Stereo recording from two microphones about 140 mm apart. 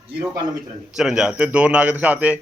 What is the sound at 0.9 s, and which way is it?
A man's voice, 5° right (ahead or behind).